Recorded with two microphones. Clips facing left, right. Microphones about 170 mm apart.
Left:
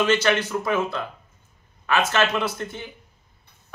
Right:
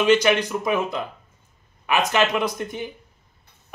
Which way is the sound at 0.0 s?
15° right (ahead or behind).